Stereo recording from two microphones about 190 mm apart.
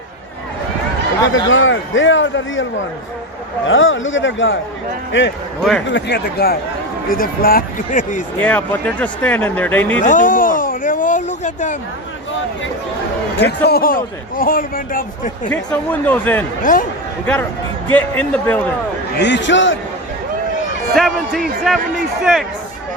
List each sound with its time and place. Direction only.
1.3 s a man's voice: 90° left
3.7 s a man's voice: 90° left
5.9 s a man's voice: 60° left (ahead or behind); by 8.2 s 45° left (ahead or behind)
8.4 s speech: 10° left (ahead or behind)
10.0 s a man's voice: 40° left (ahead or behind)
13.4 s a man's voice: 55° left (ahead or behind)
15.4 s speech: 5° left (ahead or behind)
16.7 s a man's voice: 45° left (ahead or behind)
17.9 s speech: 10° left (ahead or behind)
19.1 s a man's voice: 65° left (ahead or behind)
20.9 s a man's voice: centre (ahead or behind)